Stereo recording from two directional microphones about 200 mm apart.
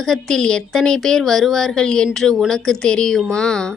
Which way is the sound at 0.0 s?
Centre (ahead or behind).